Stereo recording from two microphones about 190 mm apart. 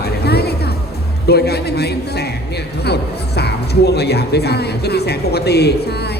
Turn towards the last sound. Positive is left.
turn(degrees=60)  # may be behind; listen again after turning